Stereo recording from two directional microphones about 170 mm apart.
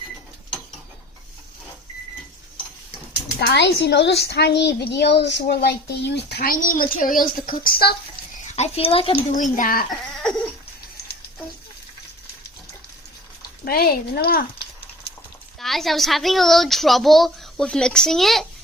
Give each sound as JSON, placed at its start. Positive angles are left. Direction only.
{"t": 3.4, "sound": "a woman's voice", "side_deg": 80}
{"t": 8.5, "sound": "speech", "side_deg": 40}
{"t": 9.3, "sound": "speech", "side_deg": 50}
{"t": 13.7, "sound": "speech", "side_deg": 65}
{"t": 15.6, "sound": "a woman's voice", "side_deg": 0}